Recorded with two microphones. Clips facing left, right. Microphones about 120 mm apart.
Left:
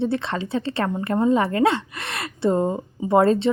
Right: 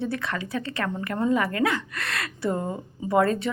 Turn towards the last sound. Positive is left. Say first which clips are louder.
# left 5 dB
turn(degrees=25)  # may be behind; listen again after turning